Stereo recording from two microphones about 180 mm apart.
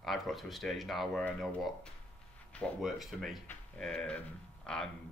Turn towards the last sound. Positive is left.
turn(degrees=5)  # may be behind; listen again after turning